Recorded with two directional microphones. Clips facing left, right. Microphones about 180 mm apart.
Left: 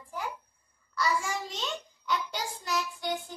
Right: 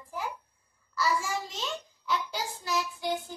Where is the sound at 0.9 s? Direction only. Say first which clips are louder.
Right 1 dB; 5° right (ahead or behind).